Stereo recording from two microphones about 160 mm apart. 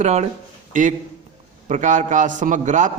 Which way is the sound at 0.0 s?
45° right (ahead or behind).